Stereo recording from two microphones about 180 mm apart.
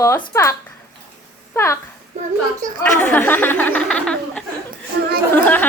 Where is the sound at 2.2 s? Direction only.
40° right (ahead or behind).